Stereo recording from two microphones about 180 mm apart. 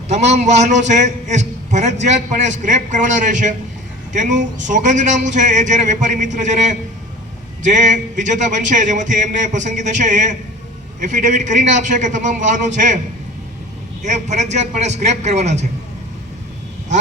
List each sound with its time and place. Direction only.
0.1 s a man's voice: 40° right (ahead or behind)
14.0 s a man's voice: 40° right (ahead or behind)